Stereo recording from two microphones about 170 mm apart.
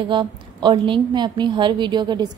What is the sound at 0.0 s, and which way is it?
A woman's voice, 25° right (ahead or behind).